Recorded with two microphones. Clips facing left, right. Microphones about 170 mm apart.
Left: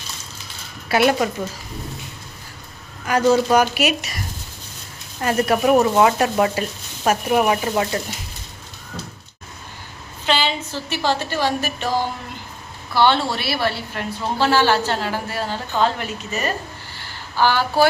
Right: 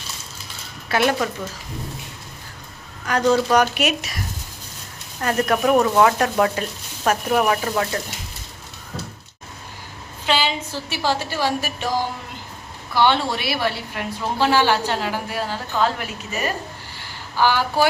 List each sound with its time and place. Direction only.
0.9 s speech: 10° left (ahead or behind)
3.1 s speech: 5° left (ahead or behind)
5.2 s speech: 10° left (ahead or behind)
7.4 s frying: 20° left (ahead or behind)
10.2 s a woman's voice: 10° right (ahead or behind)